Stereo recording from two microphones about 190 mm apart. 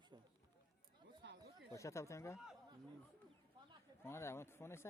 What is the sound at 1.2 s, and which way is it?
Chatter, 65° right (ahead or behind).